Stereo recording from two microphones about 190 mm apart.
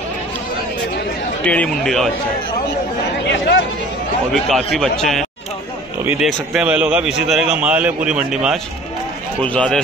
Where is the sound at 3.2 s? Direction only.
65° left (ahead or behind).